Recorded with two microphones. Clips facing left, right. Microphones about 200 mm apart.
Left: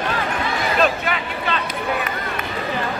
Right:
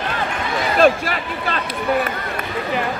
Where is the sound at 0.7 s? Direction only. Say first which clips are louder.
Right 6 dB; 35° right (ahead or behind).